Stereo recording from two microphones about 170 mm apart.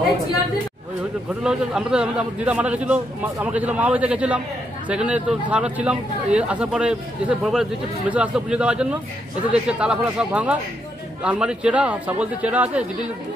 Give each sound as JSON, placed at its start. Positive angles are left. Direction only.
{"t": 1.4, "sound": "a man's voice", "side_deg": -5}